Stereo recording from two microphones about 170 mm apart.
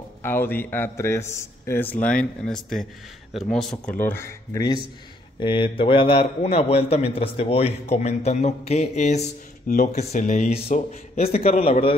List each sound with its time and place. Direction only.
0.2 s a man's voice: 15° left (ahead or behind)
4.0 s a man's voice: 15° left (ahead or behind)
5.4 s a man's voice: 30° left (ahead or behind)